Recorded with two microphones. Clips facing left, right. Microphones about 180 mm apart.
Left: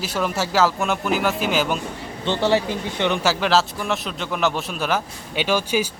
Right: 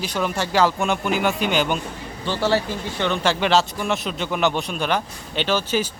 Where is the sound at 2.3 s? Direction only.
20° left (ahead or behind).